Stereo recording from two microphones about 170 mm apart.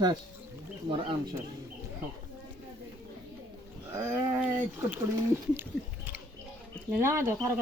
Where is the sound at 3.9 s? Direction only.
15° right (ahead or behind).